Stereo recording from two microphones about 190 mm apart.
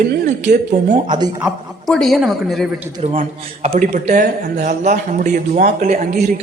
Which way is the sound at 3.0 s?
35° right (ahead or behind).